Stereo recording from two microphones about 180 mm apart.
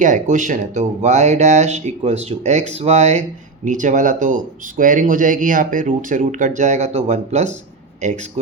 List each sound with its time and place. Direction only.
0.0 s speech: 45° right (ahead or behind)